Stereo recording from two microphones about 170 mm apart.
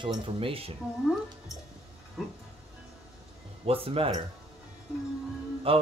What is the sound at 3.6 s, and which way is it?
Speech, 35° right (ahead or behind).